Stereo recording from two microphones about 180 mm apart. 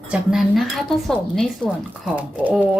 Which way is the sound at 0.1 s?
5° right (ahead or behind).